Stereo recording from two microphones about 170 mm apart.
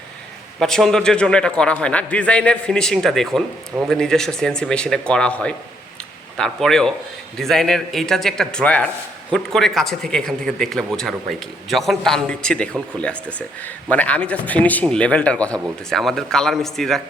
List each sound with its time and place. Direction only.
0.6 s a man's voice: 5° left (ahead or behind)